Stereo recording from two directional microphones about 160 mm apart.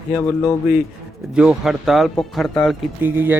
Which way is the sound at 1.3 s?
5° right (ahead or behind).